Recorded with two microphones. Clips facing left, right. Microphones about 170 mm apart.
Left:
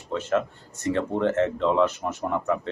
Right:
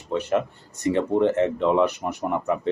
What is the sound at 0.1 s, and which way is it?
Speech, 15° right (ahead or behind).